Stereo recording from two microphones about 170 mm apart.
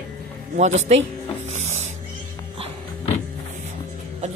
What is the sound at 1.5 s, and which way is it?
Music, 40° right (ahead or behind).